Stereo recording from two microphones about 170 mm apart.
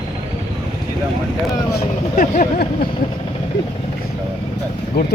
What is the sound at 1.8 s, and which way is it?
Speech, 45° left (ahead or behind).